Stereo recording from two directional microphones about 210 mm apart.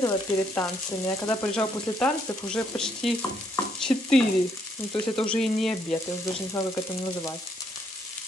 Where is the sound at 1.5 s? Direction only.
5° left (ahead or behind).